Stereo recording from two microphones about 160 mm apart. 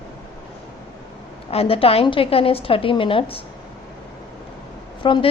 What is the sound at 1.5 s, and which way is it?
A woman's voice, 35° left (ahead or behind).